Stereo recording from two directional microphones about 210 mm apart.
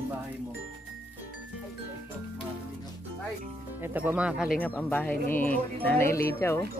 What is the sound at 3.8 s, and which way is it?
Speech, 10° right (ahead or behind).